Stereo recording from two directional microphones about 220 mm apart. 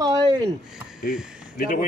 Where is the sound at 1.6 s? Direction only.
40° left (ahead or behind).